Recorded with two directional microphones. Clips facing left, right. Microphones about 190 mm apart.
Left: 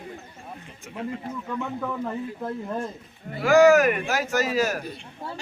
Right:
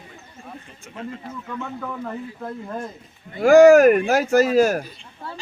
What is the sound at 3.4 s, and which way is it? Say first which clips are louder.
Speech: right 6 dB; 50° right (ahead or behind).